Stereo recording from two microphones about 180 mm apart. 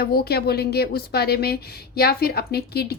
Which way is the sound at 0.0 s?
60° left (ahead or behind).